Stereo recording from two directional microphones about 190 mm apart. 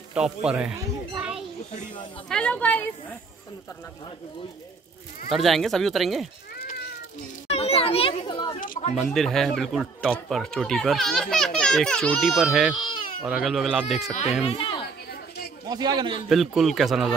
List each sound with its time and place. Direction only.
0.1 s a child's voice: 5° right (ahead or behind)
0.7 s children playing: 5° right (ahead or behind)
2.2 s a woman's voice: 5° left (ahead or behind)
5.3 s a child's voice: centre (ahead or behind)
6.6 s cat: 50° left (ahead or behind)
7.4 s a child's voice: 35° left (ahead or behind)
8.5 s speech: 45° left (ahead or behind)
8.9 s a child's voice: centre (ahead or behind)
14.4 s speech: 30° left (ahead or behind)
15.7 s a man's voice: 20° right (ahead or behind)
16.3 s a child's voice: centre (ahead or behind)